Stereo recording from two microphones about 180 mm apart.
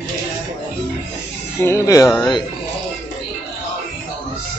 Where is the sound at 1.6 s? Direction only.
15° left (ahead or behind).